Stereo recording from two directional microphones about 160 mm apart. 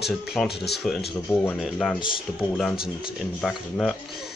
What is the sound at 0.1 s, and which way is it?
Speech, centre (ahead or behind).